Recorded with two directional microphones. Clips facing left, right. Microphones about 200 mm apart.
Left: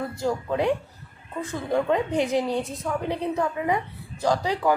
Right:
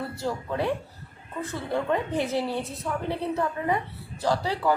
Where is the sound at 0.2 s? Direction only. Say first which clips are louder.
Left 4 dB; 15° left (ahead or behind).